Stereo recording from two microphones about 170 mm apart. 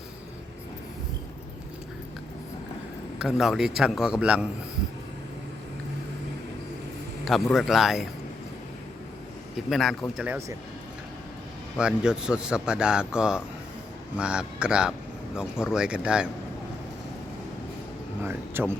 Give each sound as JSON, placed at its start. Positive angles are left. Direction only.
{"t": 3.2, "sound": "a man's voice", "side_deg": -5}
{"t": 7.5, "sound": "a man's voice", "side_deg": 0}
{"t": 9.6, "sound": "a man's voice", "side_deg": 0}
{"t": 11.8, "sound": "a man's voice", "side_deg": -5}
{"t": 18.2, "sound": "a sound", "side_deg": -15}